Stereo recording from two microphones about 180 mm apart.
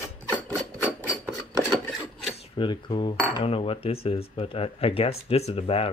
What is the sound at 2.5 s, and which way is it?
Speech, 25° left (ahead or behind).